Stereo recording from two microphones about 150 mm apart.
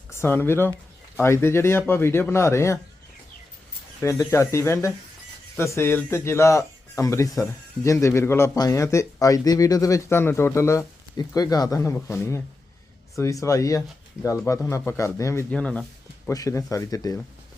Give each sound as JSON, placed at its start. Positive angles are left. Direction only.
{"t": 0.1, "sound": "speech", "side_deg": 15}
{"t": 4.0, "sound": "a man's voice", "side_deg": 20}
{"t": 15.5, "sound": "speech", "side_deg": 5}
{"t": 16.3, "sound": "a man's voice", "side_deg": 20}